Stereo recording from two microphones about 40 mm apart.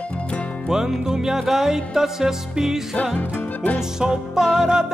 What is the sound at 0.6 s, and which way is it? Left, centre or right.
Music, centre.